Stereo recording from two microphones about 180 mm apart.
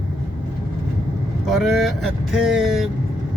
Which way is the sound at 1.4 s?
Centre (ahead or behind).